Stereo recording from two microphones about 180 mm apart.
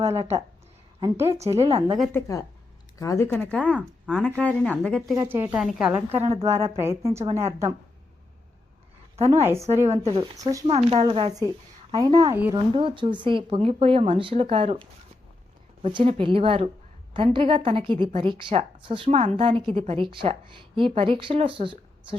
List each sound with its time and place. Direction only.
1.1 s a woman's voice: 15° right (ahead or behind)
1.5 s speech: 30° right (ahead or behind)
2.1 s speech: 15° left (ahead or behind)
3.8 s speech: 5° right (ahead or behind)
4.4 s speech: 5° left (ahead or behind)
5.1 s a woman's voice: 15° right (ahead or behind)
9.2 s a woman's voice: 15° right (ahead or behind)
9.8 s a woman's voice: 40° right (ahead or behind); by 10.7 s 20° right (ahead or behind)
10.7 s speech: 35° right (ahead or behind)
11.9 s a woman's voice: 20° right (ahead or behind)